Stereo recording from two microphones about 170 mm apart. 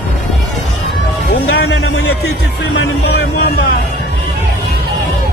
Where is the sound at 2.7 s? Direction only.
70° left (ahead or behind).